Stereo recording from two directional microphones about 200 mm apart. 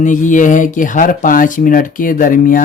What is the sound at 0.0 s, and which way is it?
Speech, 40° left (ahead or behind).